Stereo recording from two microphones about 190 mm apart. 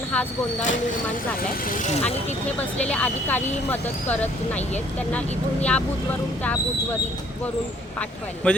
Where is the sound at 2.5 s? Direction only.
5° left (ahead or behind).